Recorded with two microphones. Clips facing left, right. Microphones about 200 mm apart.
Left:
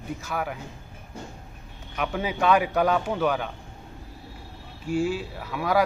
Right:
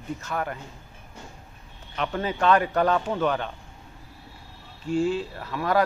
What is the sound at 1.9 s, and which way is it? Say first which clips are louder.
Speech: even; 10° left (ahead or behind).